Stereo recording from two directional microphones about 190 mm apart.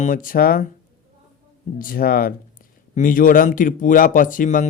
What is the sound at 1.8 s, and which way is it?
A man's voice, 50° left (ahead or behind).